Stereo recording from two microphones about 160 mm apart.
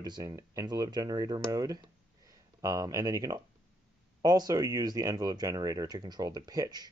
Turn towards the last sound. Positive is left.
turn(degrees=-25)  # may be behind; listen again after turning